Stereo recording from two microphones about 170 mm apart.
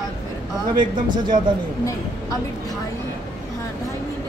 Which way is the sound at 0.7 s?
25° right (ahead or behind).